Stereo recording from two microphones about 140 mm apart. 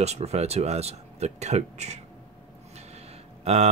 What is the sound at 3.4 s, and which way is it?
Speech, 50° right (ahead or behind).